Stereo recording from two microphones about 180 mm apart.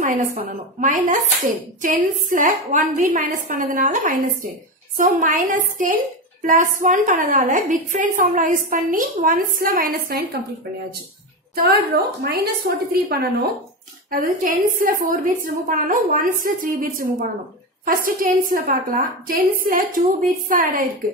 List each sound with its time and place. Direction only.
0.7 s a woman's voice: 45° right (ahead or behind)
11.5 s a woman's voice: 60° right (ahead or behind)